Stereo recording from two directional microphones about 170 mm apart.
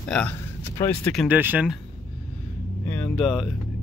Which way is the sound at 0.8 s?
20° left (ahead or behind).